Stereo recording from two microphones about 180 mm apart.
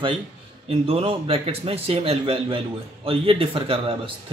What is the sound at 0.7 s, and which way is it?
Speech, 35° right (ahead or behind).